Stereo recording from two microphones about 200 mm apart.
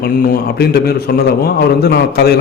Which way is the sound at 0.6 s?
50° left (ahead or behind).